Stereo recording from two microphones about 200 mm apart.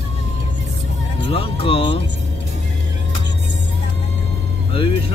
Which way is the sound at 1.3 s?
30° left (ahead or behind).